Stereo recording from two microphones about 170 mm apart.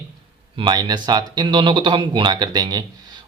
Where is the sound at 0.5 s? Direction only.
25° right (ahead or behind).